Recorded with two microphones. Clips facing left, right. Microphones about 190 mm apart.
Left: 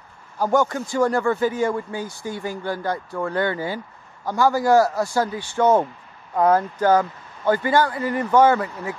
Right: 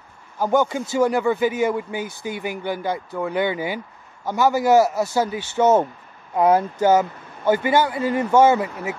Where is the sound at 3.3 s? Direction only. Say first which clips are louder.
Right 1 dB; 15° right (ahead or behind).